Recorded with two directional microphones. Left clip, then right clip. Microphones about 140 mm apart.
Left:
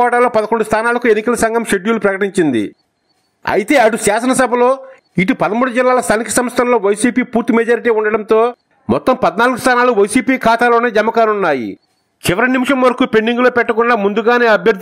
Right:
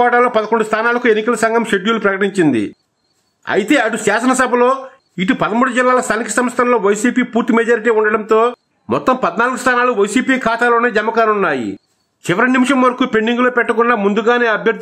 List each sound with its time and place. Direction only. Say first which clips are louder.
0.0 s a man's voice: even; 45° left (ahead or behind)
3.4 s a man's voice: left 3 dB; 45° left (ahead or behind)
12.3 s a man's voice: even; 30° left (ahead or behind)